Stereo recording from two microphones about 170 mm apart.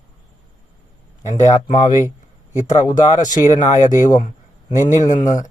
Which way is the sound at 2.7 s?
25° left (ahead or behind).